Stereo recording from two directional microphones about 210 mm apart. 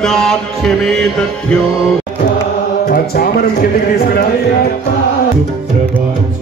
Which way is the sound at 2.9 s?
45° left (ahead or behind).